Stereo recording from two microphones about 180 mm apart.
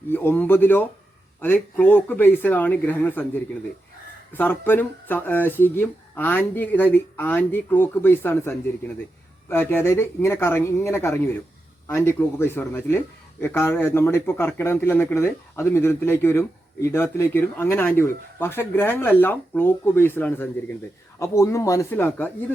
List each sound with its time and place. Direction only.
0.1 s a man's voice: 10° left (ahead or behind)